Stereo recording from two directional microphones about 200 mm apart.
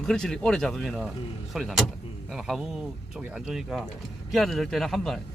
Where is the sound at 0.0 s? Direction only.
Centre (ahead or behind).